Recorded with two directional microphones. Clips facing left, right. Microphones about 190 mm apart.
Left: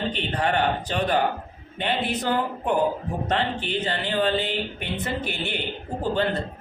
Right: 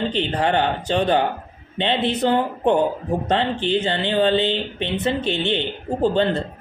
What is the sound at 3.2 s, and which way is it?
Speech, 30° right (ahead or behind).